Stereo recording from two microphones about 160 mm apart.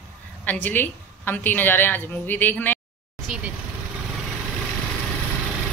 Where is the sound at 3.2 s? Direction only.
5° right (ahead or behind).